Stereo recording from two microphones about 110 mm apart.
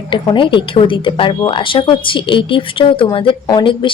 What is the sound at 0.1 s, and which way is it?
A woman's voice, 50° left (ahead or behind).